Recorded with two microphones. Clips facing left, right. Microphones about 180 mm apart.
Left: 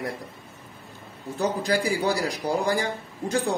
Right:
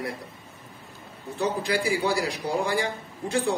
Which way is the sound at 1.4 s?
40° left (ahead or behind).